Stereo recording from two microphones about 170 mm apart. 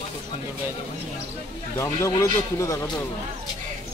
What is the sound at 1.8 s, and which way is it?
A man's voice, 15° left (ahead or behind).